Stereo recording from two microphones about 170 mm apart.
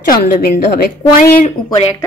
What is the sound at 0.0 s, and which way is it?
Speech, 55° left (ahead or behind).